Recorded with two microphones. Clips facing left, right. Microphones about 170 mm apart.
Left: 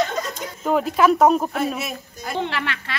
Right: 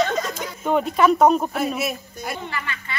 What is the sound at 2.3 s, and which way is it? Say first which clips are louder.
Speech: left 6 dB; 85° left.